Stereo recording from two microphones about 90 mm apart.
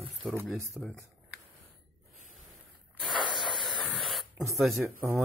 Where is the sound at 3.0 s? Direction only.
60° left (ahead or behind).